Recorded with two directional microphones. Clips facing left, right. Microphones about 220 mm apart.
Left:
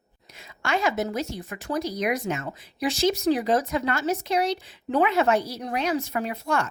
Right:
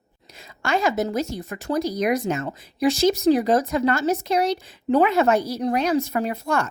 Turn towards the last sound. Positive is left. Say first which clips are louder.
# right 3 dB
turn(degrees=-45)  # may be behind; listen again after turning